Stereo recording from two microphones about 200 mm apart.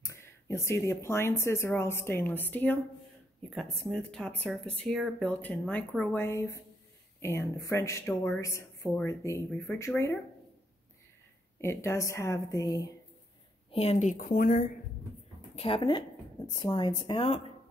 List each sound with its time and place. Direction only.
0.0 s speech: 15° left (ahead or behind)
11.6 s speech: 15° left (ahead or behind)
13.7 s a woman's voice: 30° left (ahead or behind); by 14.7 s 45° left (ahead or behind)
15.5 s speech: 30° left (ahead or behind)